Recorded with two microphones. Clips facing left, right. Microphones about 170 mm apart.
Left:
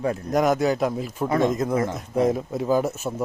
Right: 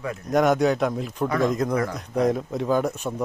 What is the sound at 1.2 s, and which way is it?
Speech, 25° left (ahead or behind).